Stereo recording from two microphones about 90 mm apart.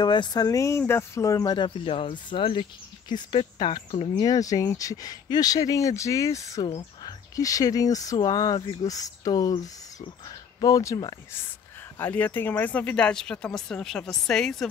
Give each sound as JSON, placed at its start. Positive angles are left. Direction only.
{"t": 0.0, "sound": "speech", "side_deg": 55}
{"t": 1.9, "sound": "speech", "side_deg": 80}
{"t": 3.3, "sound": "speech", "side_deg": 65}
{"t": 12.0, "sound": "speech", "side_deg": 20}